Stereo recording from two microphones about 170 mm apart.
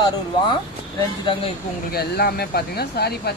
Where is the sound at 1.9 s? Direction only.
65° left (ahead or behind).